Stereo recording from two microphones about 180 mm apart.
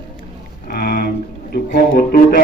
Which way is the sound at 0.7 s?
55° left (ahead or behind).